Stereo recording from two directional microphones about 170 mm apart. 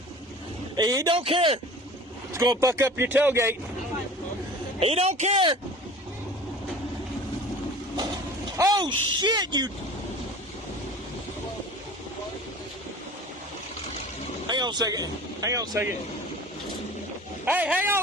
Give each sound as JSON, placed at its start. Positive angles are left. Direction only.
{"t": 0.8, "sound": "a man's voice", "side_deg": -20}
{"t": 2.3, "sound": "speech", "side_deg": -15}
{"t": 4.8, "sound": "a man's voice", "side_deg": -35}
{"t": 8.5, "sound": "speech", "side_deg": -20}
{"t": 14.4, "sound": "speech", "side_deg": -25}
{"t": 17.4, "sound": "speech", "side_deg": -10}